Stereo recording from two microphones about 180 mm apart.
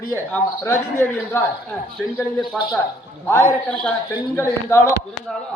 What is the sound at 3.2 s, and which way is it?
A man's voice, 15° left (ahead or behind).